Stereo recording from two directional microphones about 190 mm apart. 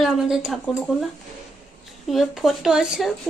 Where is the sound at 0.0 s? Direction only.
Centre (ahead or behind).